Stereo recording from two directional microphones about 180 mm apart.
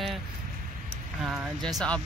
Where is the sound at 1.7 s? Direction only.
5° left (ahead or behind).